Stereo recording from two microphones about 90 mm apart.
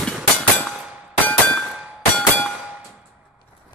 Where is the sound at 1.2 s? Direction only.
15° left (ahead or behind).